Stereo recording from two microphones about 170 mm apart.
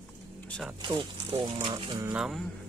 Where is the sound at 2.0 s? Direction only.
5° right (ahead or behind).